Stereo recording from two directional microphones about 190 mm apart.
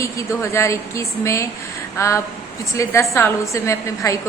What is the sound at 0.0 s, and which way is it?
A woman's voice, 15° left (ahead or behind).